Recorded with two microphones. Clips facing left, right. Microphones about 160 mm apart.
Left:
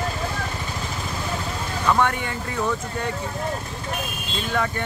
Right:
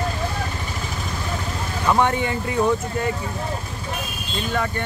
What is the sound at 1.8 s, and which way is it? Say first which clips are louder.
Speech: right 2 dB; 20° right (ahead or behind).